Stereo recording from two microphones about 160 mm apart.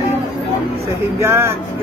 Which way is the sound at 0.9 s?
15° right (ahead or behind).